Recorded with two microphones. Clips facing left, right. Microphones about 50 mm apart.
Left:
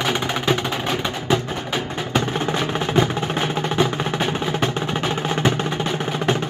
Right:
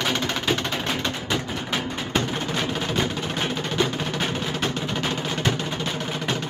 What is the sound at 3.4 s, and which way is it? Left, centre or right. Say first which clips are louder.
Music: left 3 dB; centre.